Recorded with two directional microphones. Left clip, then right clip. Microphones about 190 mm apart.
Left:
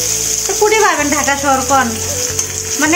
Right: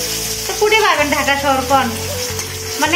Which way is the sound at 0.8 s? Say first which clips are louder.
Left 1 dB; 35° left (ahead or behind).